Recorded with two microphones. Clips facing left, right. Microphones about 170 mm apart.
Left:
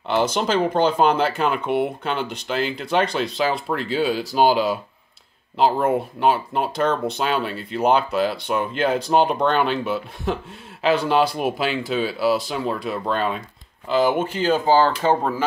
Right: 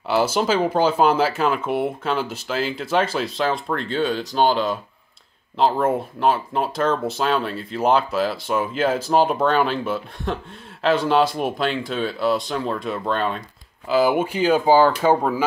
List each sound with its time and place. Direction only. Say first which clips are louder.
0.1 s speech: right 1 dB; 5° right (ahead or behind)